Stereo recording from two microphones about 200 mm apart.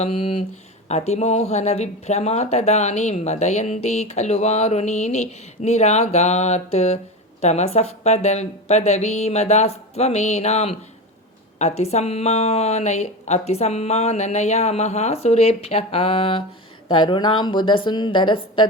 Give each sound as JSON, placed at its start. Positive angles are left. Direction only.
{"t": 0.0, "sound": "speech", "side_deg": 25}